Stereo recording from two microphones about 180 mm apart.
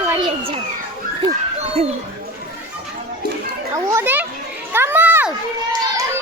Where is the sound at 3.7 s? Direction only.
15° right (ahead or behind).